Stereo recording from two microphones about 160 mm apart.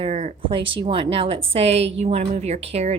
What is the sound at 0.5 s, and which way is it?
A woman's voice, 30° right (ahead or behind).